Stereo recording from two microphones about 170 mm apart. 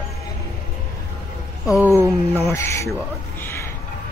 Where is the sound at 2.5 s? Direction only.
15° left (ahead or behind).